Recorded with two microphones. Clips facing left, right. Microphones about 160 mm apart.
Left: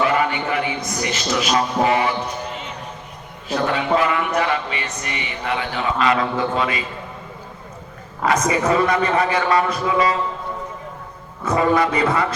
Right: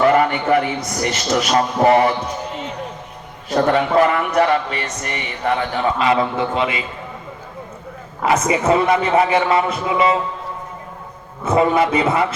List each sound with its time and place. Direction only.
0.0 s a sound: 50° right (ahead or behind)
1.0 s a man's voice: 50° right (ahead or behind)
3.5 s a man's voice: 45° right (ahead or behind)
6.0 s a man's voice: 25° right (ahead or behind)
8.2 s a man's voice: 25° right (ahead or behind)
11.4 s a man's voice: 25° right (ahead or behind)